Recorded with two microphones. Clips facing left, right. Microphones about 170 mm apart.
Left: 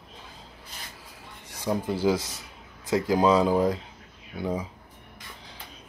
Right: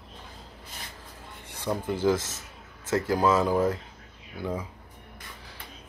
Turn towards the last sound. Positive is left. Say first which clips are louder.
# left 3 dB
turn(degrees=15)  # may be behind; listen again after turning